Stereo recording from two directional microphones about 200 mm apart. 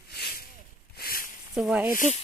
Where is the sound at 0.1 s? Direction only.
55° left (ahead or behind).